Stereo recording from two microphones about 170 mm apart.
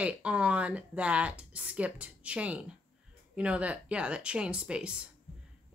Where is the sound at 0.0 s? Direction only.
5° right (ahead or behind).